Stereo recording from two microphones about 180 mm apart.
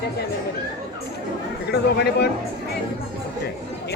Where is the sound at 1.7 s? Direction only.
65° left (ahead or behind).